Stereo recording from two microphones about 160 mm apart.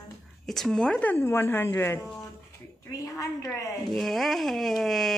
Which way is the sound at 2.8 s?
20° left (ahead or behind).